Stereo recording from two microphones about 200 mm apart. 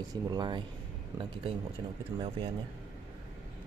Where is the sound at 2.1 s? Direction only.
25° right (ahead or behind).